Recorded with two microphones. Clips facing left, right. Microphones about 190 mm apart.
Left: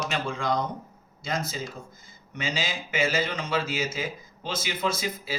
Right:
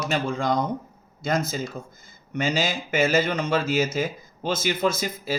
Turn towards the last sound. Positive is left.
turn(degrees=-45)  # may be behind; listen again after turning